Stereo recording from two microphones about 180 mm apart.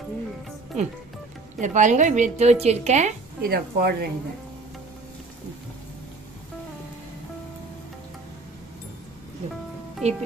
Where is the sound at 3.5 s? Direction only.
60° right (ahead or behind).